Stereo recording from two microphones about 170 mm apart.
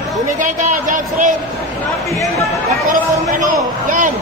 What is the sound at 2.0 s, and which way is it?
Speech, 20° left (ahead or behind).